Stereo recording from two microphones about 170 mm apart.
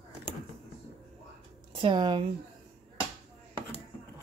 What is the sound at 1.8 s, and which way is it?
Speech, 25° right (ahead or behind).